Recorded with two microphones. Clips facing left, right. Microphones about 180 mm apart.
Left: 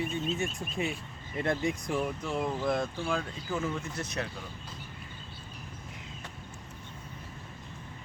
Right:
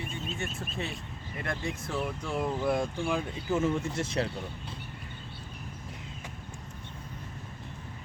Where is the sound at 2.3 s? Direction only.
Centre (ahead or behind); by 4.3 s 30° right (ahead or behind).